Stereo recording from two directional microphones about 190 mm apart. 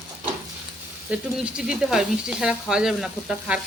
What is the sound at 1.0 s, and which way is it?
Speech, 5° right (ahead or behind).